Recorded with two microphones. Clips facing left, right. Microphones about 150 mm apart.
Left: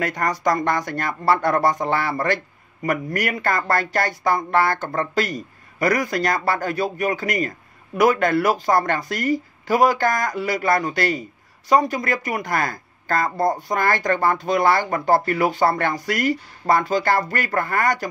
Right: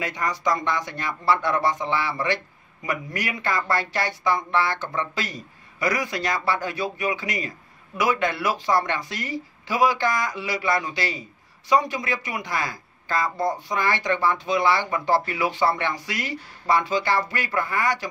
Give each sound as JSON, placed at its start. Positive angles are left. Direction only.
{"t": 0.0, "sound": "speech", "side_deg": 45}